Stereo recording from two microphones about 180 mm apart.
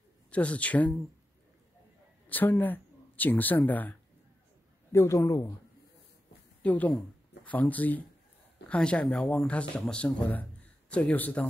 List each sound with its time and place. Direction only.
0.3 s speech: 5° left (ahead or behind)
2.2 s speech: 10° left (ahead or behind)
6.6 s speech: 10° left (ahead or behind)